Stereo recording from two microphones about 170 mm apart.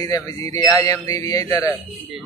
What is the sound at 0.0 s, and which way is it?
A man's voice, 20° left (ahead or behind).